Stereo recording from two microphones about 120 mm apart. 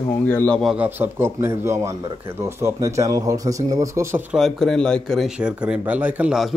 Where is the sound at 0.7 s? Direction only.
15° right (ahead or behind).